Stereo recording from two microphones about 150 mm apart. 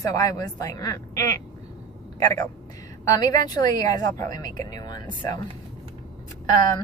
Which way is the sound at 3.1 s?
25° left (ahead or behind).